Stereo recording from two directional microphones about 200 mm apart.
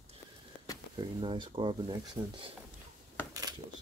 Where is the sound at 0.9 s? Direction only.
25° right (ahead or behind).